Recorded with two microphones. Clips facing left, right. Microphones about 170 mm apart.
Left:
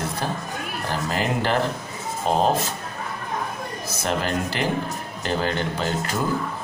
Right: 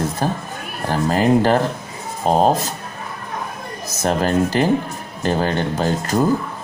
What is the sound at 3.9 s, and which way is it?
Speech, 40° right (ahead or behind).